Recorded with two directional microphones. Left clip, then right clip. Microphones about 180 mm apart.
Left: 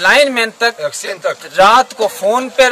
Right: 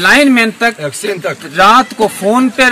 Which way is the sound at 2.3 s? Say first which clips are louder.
Even; 40° left (ahead or behind).